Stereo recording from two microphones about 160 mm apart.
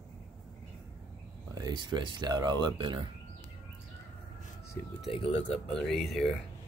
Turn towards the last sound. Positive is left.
turn(degrees=0)  # may be behind; listen again after turning